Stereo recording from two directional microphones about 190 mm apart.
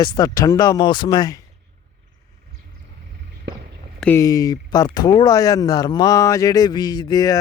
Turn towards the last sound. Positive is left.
turn(degrees=20)  # may be behind; listen again after turning